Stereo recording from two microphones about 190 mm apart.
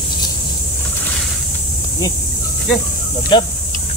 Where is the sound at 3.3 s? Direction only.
25° left (ahead or behind).